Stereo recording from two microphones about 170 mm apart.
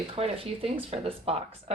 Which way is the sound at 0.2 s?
35° right (ahead or behind).